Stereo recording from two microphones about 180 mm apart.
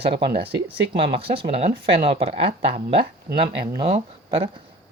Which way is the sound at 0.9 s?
30° right (ahead or behind).